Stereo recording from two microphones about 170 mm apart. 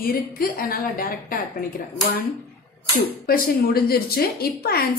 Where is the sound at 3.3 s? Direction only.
65° left (ahead or behind).